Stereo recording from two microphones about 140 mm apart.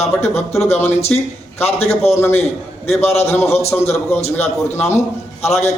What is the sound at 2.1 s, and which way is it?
Speech, 15° left (ahead or behind).